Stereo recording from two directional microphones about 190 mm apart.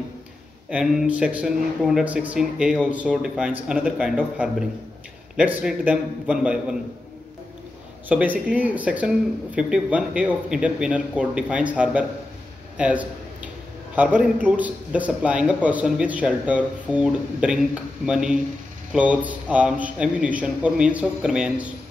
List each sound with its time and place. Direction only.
0.7 s speech: 5° right (ahead or behind)
8.1 s a man's voice: 10° right (ahead or behind)
12.7 s a sound: 5° right (ahead or behind)
13.9 s a man's voice: 10° right (ahead or behind)